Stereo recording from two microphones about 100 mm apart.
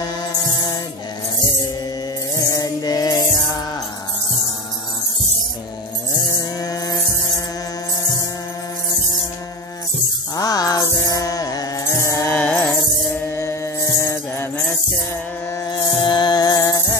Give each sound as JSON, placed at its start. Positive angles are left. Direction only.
{"t": 0.0, "sound": "music", "side_deg": 45}
{"t": 2.3, "sound": "music", "side_deg": 35}
{"t": 6.3, "sound": "mantra", "side_deg": 40}
{"t": 10.3, "sound": "music", "side_deg": 40}
{"t": 12.4, "sound": "music", "side_deg": 15}
{"t": 13.2, "sound": "mantra", "side_deg": 30}
{"t": 15.6, "sound": "music", "side_deg": 50}